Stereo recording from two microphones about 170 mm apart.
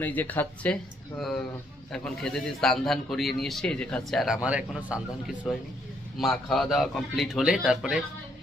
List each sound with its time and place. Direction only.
0.0 s a man's voice: 10° left (ahead or behind); by 4.9 s 5° right (ahead or behind)
6.1 s a man's voice: centre (ahead or behind)